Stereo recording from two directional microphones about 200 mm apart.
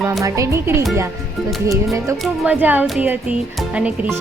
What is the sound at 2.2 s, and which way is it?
Speech, 5° right (ahead or behind).